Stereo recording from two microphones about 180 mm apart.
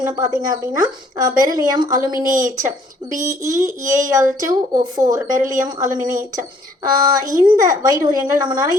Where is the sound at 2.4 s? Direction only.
45° right (ahead or behind).